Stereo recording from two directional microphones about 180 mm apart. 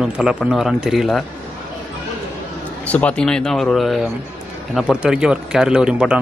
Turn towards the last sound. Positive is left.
turn(degrees=-5)  # may be behind; listen again after turning